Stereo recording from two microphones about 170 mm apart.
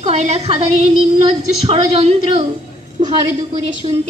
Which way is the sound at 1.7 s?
35° right (ahead or behind).